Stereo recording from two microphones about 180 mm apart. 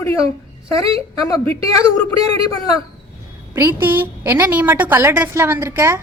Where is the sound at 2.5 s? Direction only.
20° left (ahead or behind).